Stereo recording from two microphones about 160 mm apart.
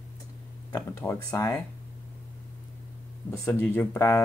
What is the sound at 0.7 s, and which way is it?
Speech, 15° left (ahead or behind).